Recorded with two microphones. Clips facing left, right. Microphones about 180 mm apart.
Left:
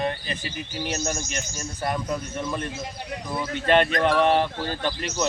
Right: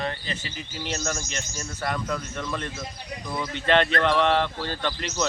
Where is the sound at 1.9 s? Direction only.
15° left (ahead or behind).